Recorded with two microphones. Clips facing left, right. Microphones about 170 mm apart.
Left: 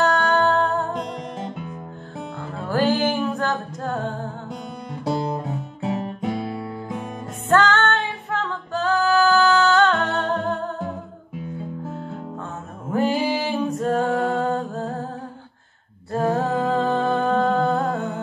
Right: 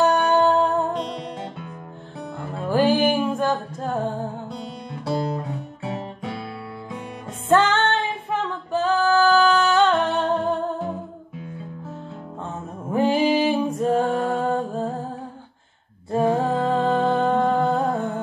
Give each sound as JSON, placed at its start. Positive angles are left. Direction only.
{"t": 0.0, "sound": "music", "side_deg": -15}
{"t": 2.7, "sound": "music", "side_deg": -15}
{"t": 5.0, "sound": "guitar", "side_deg": 20}
{"t": 7.4, "sound": "music", "side_deg": -15}
{"t": 12.9, "sound": "a sound", "side_deg": -15}
{"t": 13.7, "sound": "a capella", "side_deg": -15}
{"t": 16.1, "sound": "music", "side_deg": -15}